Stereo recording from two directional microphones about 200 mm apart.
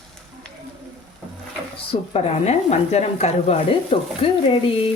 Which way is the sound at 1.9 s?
30° left (ahead or behind).